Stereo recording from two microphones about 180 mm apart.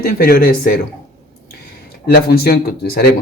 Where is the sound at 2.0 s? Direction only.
55° left (ahead or behind).